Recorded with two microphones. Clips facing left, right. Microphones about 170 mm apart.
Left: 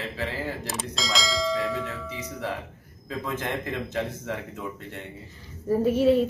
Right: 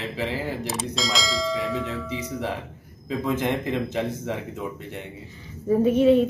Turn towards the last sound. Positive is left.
turn(degrees=5)  # may be behind; listen again after turning